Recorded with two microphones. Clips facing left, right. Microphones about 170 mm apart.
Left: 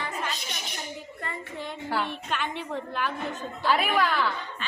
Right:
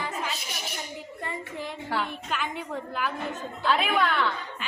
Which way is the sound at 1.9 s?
Centre (ahead or behind).